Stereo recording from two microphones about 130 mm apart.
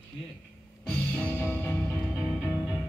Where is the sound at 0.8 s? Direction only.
15° left (ahead or behind).